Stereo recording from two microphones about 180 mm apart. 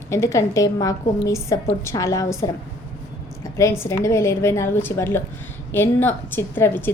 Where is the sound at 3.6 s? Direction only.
15° left (ahead or behind).